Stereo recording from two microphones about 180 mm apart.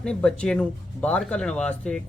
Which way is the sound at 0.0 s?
5° left (ahead or behind).